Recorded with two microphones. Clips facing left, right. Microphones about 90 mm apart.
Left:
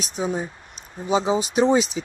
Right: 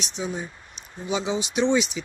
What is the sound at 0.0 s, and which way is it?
Speech, 40° left (ahead or behind).